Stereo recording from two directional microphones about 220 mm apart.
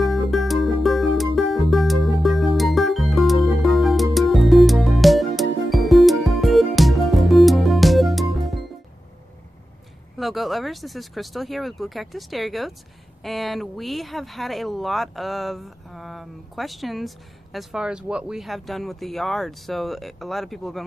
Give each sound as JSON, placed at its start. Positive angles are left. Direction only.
{"t": 0.0, "sound": "music", "side_deg": 0}
{"t": 10.1, "sound": "speech", "side_deg": 0}